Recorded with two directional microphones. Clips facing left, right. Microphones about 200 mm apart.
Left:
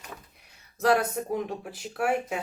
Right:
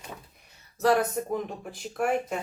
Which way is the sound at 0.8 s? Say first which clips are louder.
Even; 10° left (ahead or behind).